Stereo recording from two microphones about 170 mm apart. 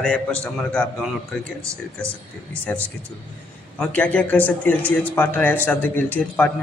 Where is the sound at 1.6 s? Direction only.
15° right (ahead or behind).